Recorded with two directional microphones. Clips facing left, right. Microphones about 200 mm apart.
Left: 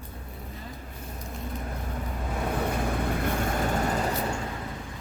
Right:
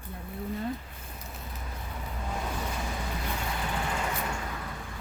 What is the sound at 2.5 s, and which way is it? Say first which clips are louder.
Vehicle: left 7 dB; 60° left (ahead or behind).